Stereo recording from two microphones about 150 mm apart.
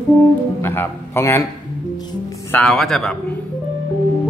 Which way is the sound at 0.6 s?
15° left (ahead or behind).